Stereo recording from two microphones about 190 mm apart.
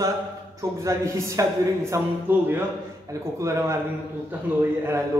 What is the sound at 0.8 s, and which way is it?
A man's voice, 15° right (ahead or behind).